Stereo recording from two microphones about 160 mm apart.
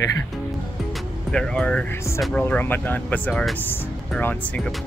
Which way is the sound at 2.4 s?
10° left (ahead or behind).